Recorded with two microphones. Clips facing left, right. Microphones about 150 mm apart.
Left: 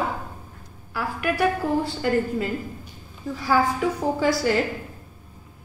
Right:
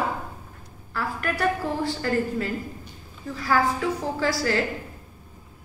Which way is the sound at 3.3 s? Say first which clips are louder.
Left 1 dB; 10° left (ahead or behind).